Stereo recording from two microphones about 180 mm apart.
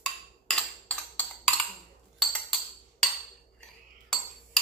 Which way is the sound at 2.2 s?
Centre (ahead or behind).